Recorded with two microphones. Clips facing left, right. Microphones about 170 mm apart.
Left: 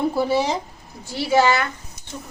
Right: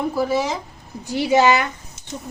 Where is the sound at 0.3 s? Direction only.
30° left (ahead or behind).